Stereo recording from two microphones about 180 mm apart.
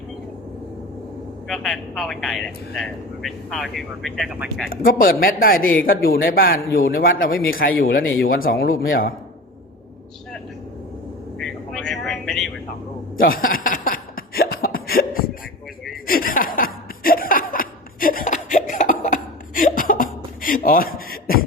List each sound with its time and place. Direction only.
1.5 s a man's voice: centre (ahead or behind)
4.7 s speech: 55° left (ahead or behind)
11.3 s vehicle: 5° left (ahead or behind)
13.2 s cough: 50° left (ahead or behind)
16.0 s chuckle: 55° left (ahead or behind)